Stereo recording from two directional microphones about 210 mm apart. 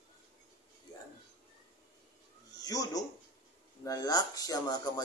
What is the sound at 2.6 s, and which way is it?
Speech, 15° left (ahead or behind).